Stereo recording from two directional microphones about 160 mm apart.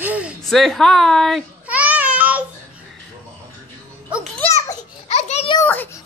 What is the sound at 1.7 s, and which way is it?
Babbling, 10° right (ahead or behind).